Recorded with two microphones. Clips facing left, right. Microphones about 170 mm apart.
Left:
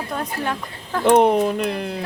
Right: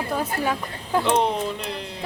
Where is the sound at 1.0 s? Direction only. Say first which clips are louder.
Left 9 dB; 50° left (ahead or behind).